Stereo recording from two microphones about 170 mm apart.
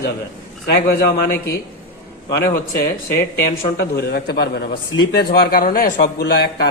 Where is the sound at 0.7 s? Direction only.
70° left (ahead or behind).